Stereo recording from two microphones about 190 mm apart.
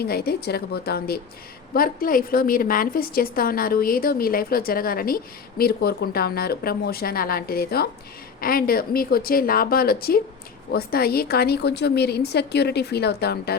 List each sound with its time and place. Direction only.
0.0 s a woman's voice: 55° left (ahead or behind)